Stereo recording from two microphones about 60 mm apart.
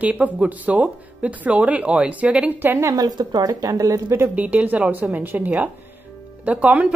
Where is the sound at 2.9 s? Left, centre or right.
Right.